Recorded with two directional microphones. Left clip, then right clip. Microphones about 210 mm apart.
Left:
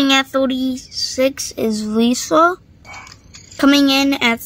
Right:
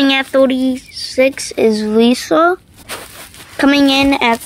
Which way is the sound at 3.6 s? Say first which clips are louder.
Right 2 dB; 20° left (ahead or behind).